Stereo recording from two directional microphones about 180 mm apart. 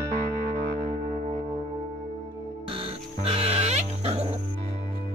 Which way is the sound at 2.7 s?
30° right (ahead or behind).